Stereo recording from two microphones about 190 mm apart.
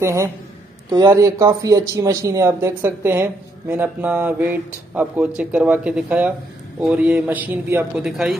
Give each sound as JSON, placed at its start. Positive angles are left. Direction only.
{"t": 0.0, "sound": "speech", "side_deg": -15}